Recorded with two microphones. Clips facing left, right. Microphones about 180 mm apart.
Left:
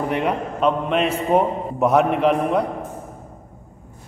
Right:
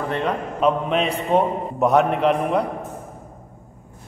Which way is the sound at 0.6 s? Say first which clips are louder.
Even; centre (ahead or behind).